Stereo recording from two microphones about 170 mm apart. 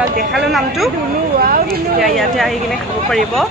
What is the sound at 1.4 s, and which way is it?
Speech, 60° right (ahead or behind).